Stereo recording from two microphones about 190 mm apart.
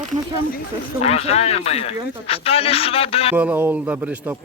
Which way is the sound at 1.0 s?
35° left (ahead or behind).